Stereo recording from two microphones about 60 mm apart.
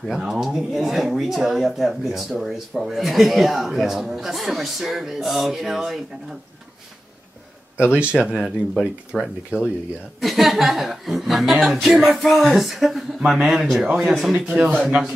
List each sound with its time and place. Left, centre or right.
0.2 s speech: centre
7.9 s speech: centre
8.4 s speech: centre
9.5 s a man's voice: right
10.2 s speech: centre
14.5 s a man's voice: right